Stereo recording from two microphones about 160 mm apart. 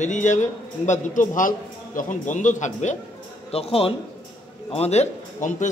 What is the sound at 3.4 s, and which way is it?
A man's voice, 40° left (ahead or behind).